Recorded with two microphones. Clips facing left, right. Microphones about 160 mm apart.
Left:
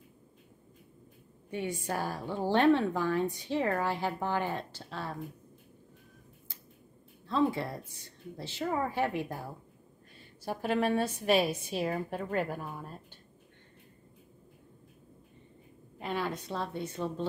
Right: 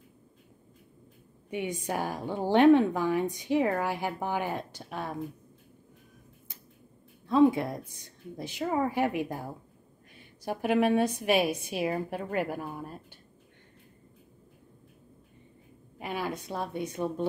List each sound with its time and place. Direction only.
1.5 s a woman's voice: 15° right (ahead or behind)
7.2 s a woman's voice: 15° right (ahead or behind)
16.0 s a woman's voice: 10° right (ahead or behind)